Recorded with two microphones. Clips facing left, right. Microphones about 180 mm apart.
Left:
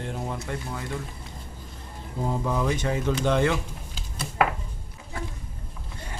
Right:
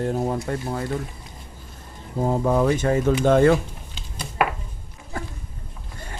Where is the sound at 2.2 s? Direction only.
50° right (ahead or behind).